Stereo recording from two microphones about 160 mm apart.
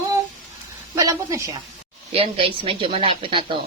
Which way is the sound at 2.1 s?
35° right (ahead or behind).